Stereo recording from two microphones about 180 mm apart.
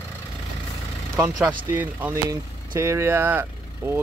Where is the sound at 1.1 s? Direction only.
15° right (ahead or behind).